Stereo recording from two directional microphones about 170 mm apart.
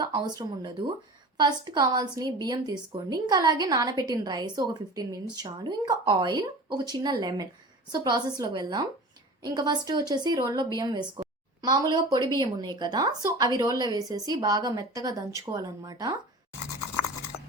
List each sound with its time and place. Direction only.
0.0 s a woman's voice: 25° right (ahead or behind)